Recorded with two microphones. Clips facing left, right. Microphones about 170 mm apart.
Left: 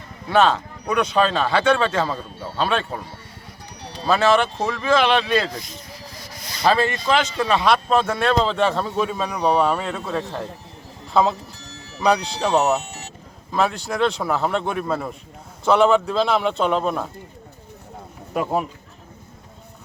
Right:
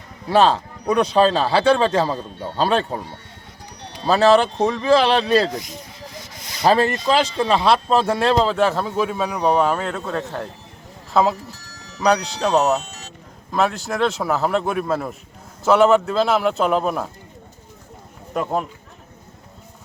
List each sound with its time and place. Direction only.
0.3 s a man's voice: 35° right (ahead or behind)
4.0 s a man's voice: 35° right (ahead or behind)
5.5 s speech: 15° right (ahead or behind)
6.1 s a sound: 20° right (ahead or behind)
6.7 s a man's voice: 40° right (ahead or behind)
8.4 s speech: 5° right (ahead or behind)
18.3 s speech: 5° left (ahead or behind)